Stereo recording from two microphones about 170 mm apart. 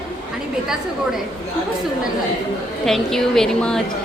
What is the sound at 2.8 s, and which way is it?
Speech, centre (ahead or behind).